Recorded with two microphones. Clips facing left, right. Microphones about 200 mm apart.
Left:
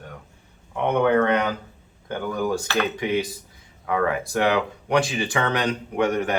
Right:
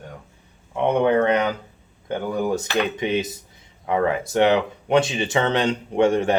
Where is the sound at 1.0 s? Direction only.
20° right (ahead or behind).